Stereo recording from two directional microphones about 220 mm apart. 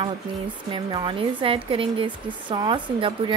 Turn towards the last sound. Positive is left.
turn(degrees=-20)  # may be behind; listen again after turning